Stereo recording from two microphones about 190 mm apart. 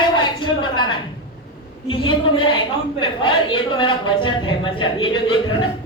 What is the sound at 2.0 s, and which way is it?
A woman's voice, 25° left (ahead or behind).